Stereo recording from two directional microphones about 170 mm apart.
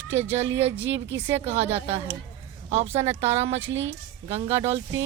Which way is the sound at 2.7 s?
40° right (ahead or behind).